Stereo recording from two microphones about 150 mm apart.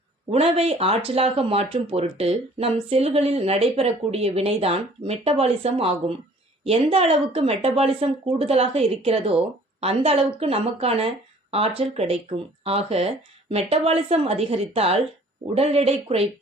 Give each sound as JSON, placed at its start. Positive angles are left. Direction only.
{"t": 0.3, "sound": "speech", "side_deg": -40}